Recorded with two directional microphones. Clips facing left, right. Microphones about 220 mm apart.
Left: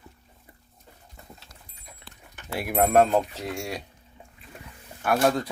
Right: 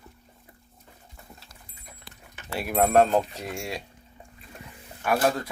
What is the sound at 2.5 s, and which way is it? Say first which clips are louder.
Speech: even; 15° left (ahead or behind).